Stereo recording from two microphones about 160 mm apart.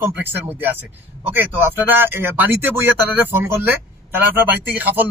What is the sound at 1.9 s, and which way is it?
Speech, 15° right (ahead or behind).